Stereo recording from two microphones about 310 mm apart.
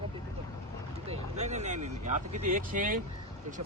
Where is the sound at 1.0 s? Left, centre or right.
Right.